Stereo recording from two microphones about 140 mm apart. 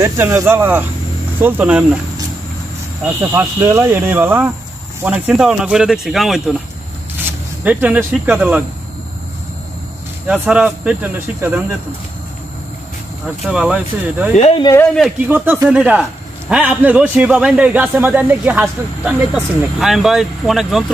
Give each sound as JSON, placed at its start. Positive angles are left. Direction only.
{"t": 0.0, "sound": "a man's voice", "side_deg": -20}
{"t": 3.2, "sound": "a man's voice", "side_deg": -20}
{"t": 7.2, "sound": "speech", "side_deg": -15}
{"t": 10.2, "sound": "a man's voice", "side_deg": -10}
{"t": 13.4, "sound": "a man's voice", "side_deg": -5}